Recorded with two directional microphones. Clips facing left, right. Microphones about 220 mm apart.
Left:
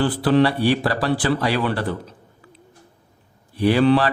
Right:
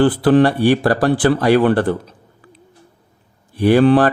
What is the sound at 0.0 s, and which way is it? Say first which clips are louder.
Speech: right 5 dB; 50° right (ahead or behind).